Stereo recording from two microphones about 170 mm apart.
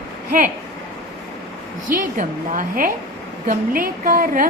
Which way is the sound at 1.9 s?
50° right (ahead or behind).